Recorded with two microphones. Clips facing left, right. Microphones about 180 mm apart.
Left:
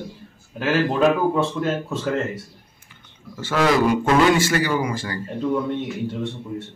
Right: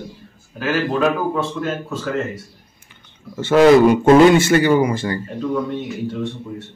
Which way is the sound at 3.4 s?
25° right (ahead or behind).